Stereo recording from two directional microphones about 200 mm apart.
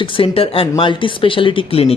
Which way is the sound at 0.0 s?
25° left (ahead or behind).